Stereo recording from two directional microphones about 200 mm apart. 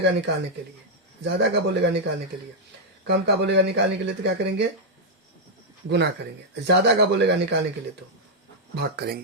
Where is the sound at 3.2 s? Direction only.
55° right (ahead or behind).